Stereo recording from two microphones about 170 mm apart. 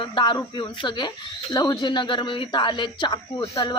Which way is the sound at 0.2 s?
25° left (ahead or behind).